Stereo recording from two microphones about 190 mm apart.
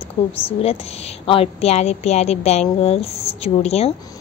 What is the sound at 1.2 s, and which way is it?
A woman's voice, 30° left (ahead or behind).